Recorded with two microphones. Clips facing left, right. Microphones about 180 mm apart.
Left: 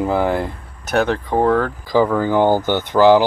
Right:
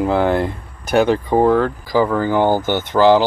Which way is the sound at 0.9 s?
5° right (ahead or behind).